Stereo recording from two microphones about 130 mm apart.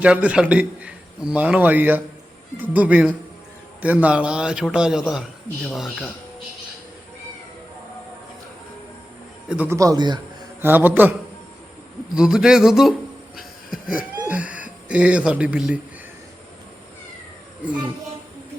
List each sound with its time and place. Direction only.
0.0 s a man's voice: 10° right (ahead or behind)
9.5 s a man's voice: 10° right (ahead or behind)
9.7 s a man's voice: 25° right (ahead or behind)
10.6 s a man's voice: 15° right (ahead or behind)
12.1 s speech: 5° right (ahead or behind)
13.3 s a sound: 5° right (ahead or behind)
14.3 s speech: 10° right (ahead or behind)